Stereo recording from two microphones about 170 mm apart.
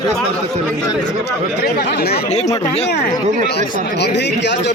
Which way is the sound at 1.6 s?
70° left (ahead or behind).